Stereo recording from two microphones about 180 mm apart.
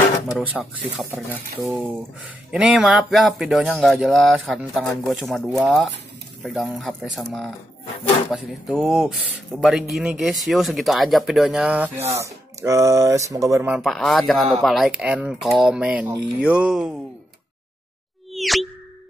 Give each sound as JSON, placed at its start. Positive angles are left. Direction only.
{"t": 0.4, "sound": "speech", "side_deg": -5}
{"t": 13.7, "sound": "speech", "side_deg": 0}
{"t": 18.3, "sound": "a sound", "side_deg": 0}